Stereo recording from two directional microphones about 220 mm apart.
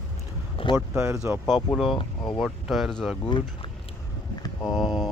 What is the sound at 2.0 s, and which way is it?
Speech, 20° left (ahead or behind).